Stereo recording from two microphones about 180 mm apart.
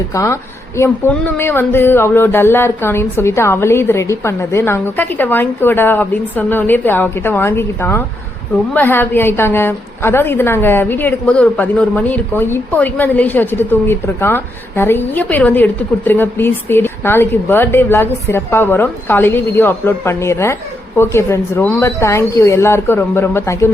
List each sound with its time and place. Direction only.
0.1 s a woman's voice: 15° left (ahead or behind)